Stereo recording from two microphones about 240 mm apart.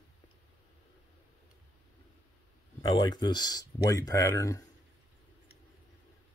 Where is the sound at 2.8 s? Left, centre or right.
Centre.